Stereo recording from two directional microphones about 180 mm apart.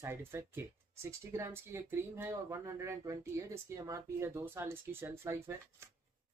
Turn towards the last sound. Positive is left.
turn(degrees=-15)  # may be behind; listen again after turning